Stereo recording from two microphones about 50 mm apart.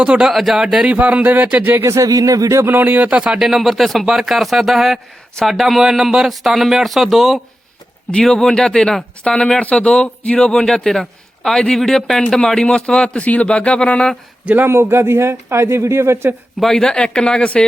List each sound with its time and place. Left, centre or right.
0.3 s speech: centre
0.9 s speech: right
1.2 s speech: right
1.8 s speech: right
2.6 s speech: right
3.1 s speech: right
3.4 s speech: centre
8.4 s speech: centre
14.7 s speech: right
16.7 s speech: centre